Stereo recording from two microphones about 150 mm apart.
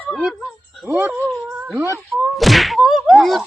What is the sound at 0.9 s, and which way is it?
Speech, 15° right (ahead or behind).